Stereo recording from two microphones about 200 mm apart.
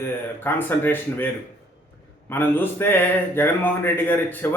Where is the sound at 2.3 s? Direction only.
10° left (ahead or behind).